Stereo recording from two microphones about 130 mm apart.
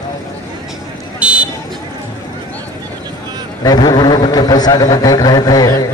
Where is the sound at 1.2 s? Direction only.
10° right (ahead or behind).